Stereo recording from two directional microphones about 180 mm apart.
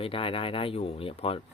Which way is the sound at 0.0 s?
30° left (ahead or behind).